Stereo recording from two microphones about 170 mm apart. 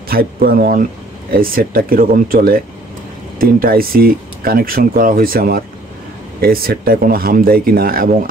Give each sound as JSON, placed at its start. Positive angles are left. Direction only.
{"t": 0.1, "sound": "speech", "side_deg": -60}